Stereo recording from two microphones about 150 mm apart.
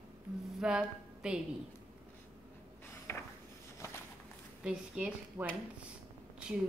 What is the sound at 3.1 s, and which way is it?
Dishes, 15° left (ahead or behind).